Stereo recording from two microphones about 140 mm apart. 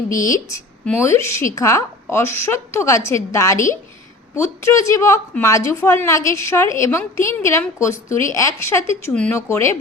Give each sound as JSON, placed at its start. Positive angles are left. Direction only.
{"t": 0.3, "sound": "a woman's voice", "side_deg": 25}